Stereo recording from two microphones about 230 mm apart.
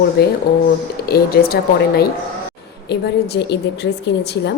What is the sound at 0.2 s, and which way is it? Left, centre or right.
A woman's voice, left.